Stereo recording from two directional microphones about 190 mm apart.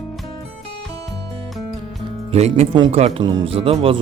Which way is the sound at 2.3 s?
35° right (ahead or behind).